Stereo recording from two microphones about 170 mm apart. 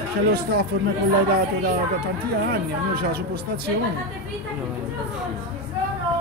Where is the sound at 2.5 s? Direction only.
70° right (ahead or behind).